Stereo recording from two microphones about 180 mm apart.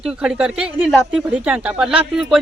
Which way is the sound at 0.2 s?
5° right (ahead or behind).